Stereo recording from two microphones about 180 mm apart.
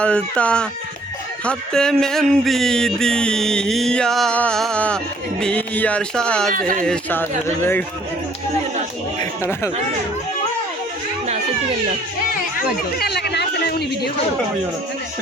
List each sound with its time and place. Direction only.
0.0 s speech: 5° left (ahead or behind)
1.5 s a sound: 5° left (ahead or behind)
6.5 s speech: 50° right (ahead or behind)
6.8 s speech: 10° left (ahead or behind)
9.5 s speech: 15° left (ahead or behind)
13.0 s a sound: 65° left (ahead or behind)